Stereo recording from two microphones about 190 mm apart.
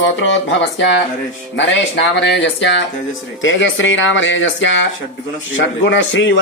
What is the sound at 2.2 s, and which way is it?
Speech, 65° left (ahead or behind).